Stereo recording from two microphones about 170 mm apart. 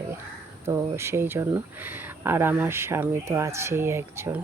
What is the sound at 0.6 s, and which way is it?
Speech, 15° right (ahead or behind).